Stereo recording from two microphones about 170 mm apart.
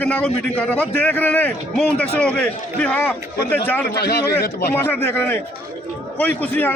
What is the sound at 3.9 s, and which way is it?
Speech, 70° left (ahead or behind).